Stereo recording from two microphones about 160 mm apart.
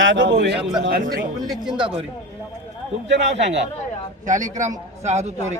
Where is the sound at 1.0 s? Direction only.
75° right (ahead or behind).